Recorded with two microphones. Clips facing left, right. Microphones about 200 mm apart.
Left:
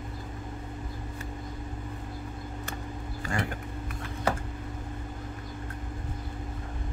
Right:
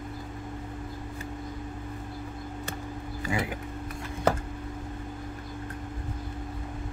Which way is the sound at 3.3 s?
5° right (ahead or behind).